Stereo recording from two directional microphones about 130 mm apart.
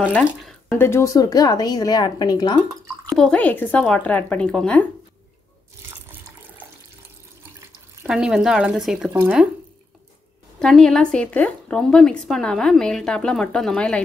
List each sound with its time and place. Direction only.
0.4 s a sound: centre (ahead or behind)
0.7 s a woman's voice: 20° left (ahead or behind)
3.1 s speech: 5° left (ahead or behind)
8.1 s a woman's voice: 5° right (ahead or behind)
10.6 s a woman's voice: 5° left (ahead or behind)